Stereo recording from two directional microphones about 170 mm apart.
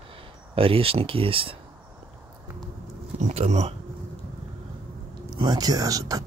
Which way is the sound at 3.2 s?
40° right (ahead or behind).